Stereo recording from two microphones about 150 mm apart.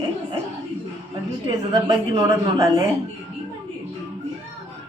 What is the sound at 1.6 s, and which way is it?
A woman's voice, 25° right (ahead or behind).